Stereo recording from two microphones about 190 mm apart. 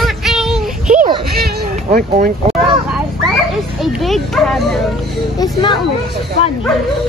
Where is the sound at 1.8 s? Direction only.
40° right (ahead or behind).